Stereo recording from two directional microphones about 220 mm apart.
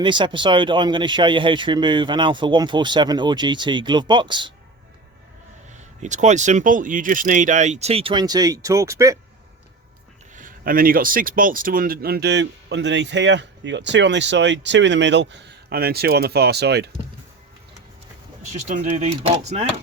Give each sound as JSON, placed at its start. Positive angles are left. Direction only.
{"t": 0.0, "sound": "speech", "side_deg": -20}
{"t": 6.0, "sound": "speech", "side_deg": -35}
{"t": 10.3, "sound": "speech", "side_deg": -40}
{"t": 18.7, "sound": "speech", "side_deg": -35}